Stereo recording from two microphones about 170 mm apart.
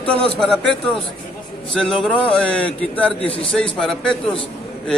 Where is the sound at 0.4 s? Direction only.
5° left (ahead or behind).